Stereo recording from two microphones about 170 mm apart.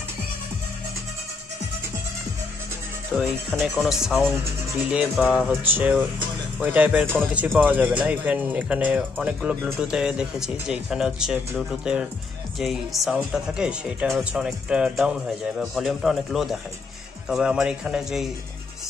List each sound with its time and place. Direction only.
3.1 s speech: 5° right (ahead or behind)